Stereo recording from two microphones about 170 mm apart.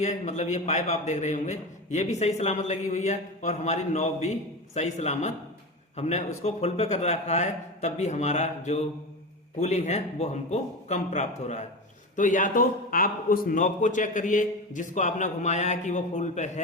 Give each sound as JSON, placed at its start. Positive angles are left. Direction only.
{"t": 0.0, "sound": "a man's voice", "side_deg": 45}